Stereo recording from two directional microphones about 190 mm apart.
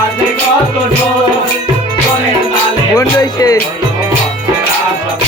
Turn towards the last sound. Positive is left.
turn(degrees=20)  # may be behind; listen again after turning